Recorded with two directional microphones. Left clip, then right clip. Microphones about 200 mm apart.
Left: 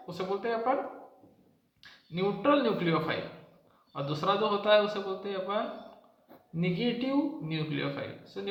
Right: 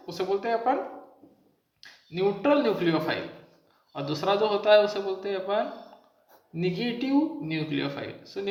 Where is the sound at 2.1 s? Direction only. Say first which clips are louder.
Right 3 dB; 20° right (ahead or behind).